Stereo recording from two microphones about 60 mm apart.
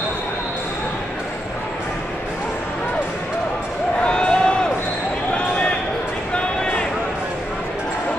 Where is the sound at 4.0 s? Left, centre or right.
Centre.